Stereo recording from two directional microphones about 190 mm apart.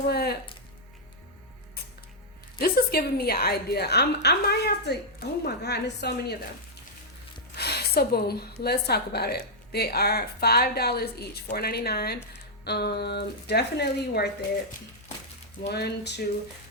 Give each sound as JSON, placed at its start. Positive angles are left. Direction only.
{"t": 0.1, "sound": "music", "side_deg": 55}
{"t": 2.6, "sound": "a woman's voice", "side_deg": 55}
{"t": 7.5, "sound": "a woman's voice", "side_deg": 60}
{"t": 15.7, "sound": "a woman's voice", "side_deg": 60}